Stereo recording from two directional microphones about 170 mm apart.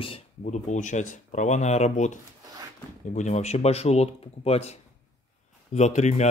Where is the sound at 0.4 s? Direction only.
45° left (ahead or behind).